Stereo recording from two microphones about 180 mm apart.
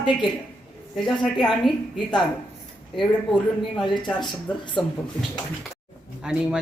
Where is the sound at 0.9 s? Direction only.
5° left (ahead or behind).